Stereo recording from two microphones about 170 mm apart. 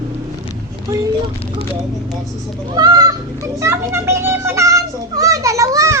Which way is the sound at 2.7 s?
25° right (ahead or behind).